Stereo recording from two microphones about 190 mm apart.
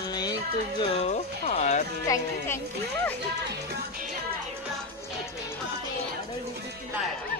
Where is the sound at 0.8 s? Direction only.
35° left (ahead or behind).